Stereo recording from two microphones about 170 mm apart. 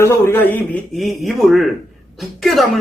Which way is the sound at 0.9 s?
Centre (ahead or behind).